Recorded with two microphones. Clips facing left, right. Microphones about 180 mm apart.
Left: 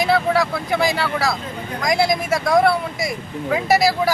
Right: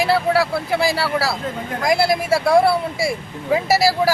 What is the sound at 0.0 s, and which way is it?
Speech, 5° right (ahead or behind).